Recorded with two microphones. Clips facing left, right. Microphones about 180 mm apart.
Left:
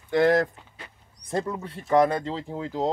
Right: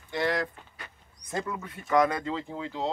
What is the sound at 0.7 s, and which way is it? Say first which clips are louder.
Speech: left 1 dB; 30° left (ahead or behind).